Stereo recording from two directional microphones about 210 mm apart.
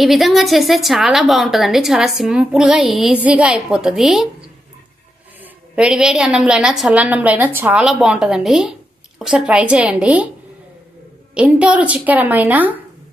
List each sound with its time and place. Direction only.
0.0 s a woman's voice: centre (ahead or behind)
5.4 s a woman's voice: 5° right (ahead or behind)
11.3 s a woman's voice: 5° right (ahead or behind)